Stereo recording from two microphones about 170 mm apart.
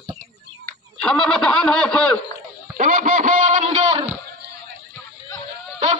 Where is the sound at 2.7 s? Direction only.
50° right (ahead or behind).